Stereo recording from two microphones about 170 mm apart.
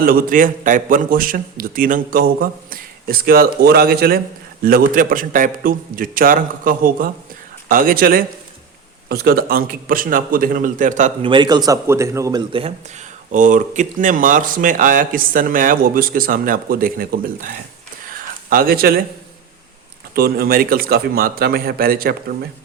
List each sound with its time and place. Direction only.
0.0 s a man's voice: 55° right (ahead or behind)
11.2 s speech: 30° right (ahead or behind)
13.3 s a man's voice: 50° right (ahead or behind)
20.1 s a man's voice: 65° right (ahead or behind)